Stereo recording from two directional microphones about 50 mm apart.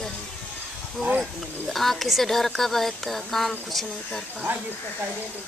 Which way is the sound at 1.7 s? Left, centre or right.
Centre.